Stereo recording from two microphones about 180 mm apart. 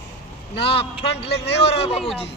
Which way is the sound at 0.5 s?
30° left (ahead or behind).